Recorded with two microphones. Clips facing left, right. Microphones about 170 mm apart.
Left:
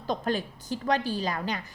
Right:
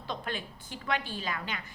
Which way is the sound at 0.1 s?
40° left (ahead or behind).